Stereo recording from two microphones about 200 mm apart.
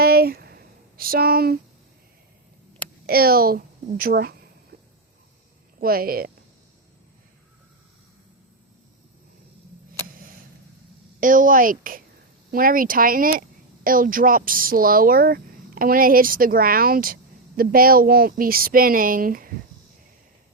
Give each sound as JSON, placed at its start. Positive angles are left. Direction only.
{"t": 0.0, "sound": "a sound", "side_deg": -50}
{"t": 3.1, "sound": "speech", "side_deg": -50}
{"t": 5.8, "sound": "speech", "side_deg": -50}
{"t": 11.2, "sound": "speech", "side_deg": -40}